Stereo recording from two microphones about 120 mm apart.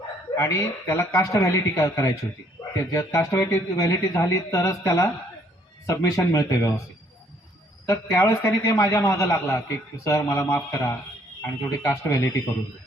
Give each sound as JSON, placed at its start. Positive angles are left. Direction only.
{"t": 0.3, "sound": "a man's voice", "side_deg": 25}
{"t": 7.9, "sound": "a man's voice", "side_deg": 25}